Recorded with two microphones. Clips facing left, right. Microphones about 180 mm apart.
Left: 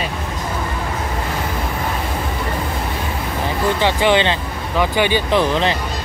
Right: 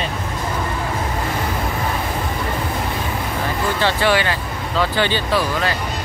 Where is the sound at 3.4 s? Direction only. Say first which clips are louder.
Left 3 dB; 15° left (ahead or behind).